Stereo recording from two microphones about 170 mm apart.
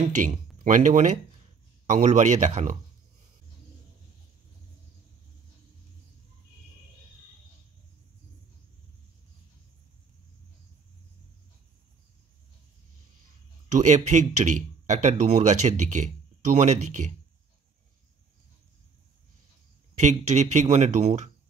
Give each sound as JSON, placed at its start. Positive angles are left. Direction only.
{"t": 0.1, "sound": "speech", "side_deg": -45}
{"t": 13.7, "sound": "speech", "side_deg": -45}
{"t": 20.0, "sound": "speech", "side_deg": -45}